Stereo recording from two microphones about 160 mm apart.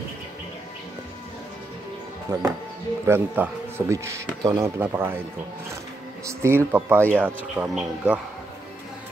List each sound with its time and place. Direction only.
2.3 s speech: 20° right (ahead or behind)
6.2 s speech: 15° right (ahead or behind)